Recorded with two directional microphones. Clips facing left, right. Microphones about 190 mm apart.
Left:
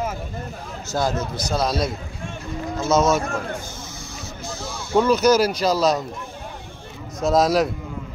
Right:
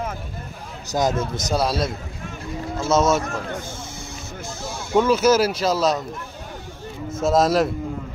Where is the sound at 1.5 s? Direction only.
5° right (ahead or behind).